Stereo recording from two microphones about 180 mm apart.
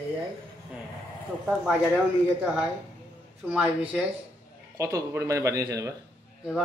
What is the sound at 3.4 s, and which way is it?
Speech, 5° right (ahead or behind).